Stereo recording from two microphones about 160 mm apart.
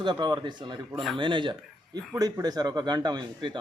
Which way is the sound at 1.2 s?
30° right (ahead or behind).